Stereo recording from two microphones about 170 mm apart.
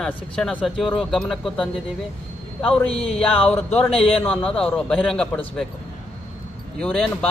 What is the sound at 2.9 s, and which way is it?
Speech, 35° left (ahead or behind).